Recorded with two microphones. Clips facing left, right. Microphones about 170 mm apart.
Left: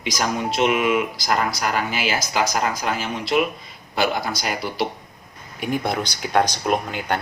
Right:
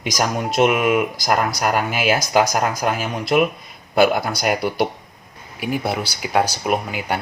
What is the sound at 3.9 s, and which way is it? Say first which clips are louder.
Speech: right 6 dB; 55° right (ahead or behind).